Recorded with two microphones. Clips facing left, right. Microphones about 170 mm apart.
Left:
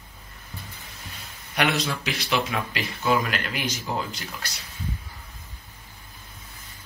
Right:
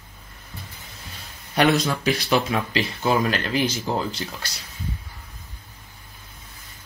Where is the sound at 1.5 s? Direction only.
35° right (ahead or behind).